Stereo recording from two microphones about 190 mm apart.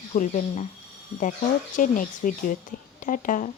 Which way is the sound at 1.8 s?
45° left (ahead or behind).